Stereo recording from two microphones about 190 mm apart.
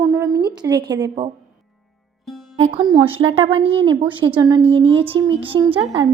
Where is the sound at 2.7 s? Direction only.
25° right (ahead or behind).